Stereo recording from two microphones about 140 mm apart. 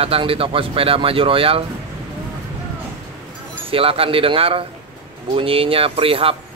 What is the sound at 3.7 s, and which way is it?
Speech, 40° right (ahead or behind).